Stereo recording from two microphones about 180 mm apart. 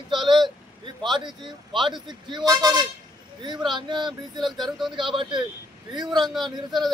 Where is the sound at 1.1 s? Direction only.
25° right (ahead or behind).